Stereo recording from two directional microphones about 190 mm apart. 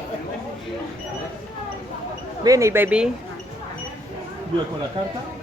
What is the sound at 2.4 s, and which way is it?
Speech, 15° right (ahead or behind).